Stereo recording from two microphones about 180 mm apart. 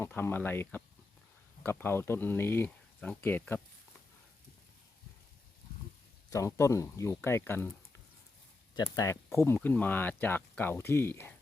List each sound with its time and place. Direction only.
0.0 s speech: 10° left (ahead or behind)
6.3 s speech: 15° left (ahead or behind)
8.7 s speech: 20° left (ahead or behind)
9.6 s speech: 10° left (ahead or behind)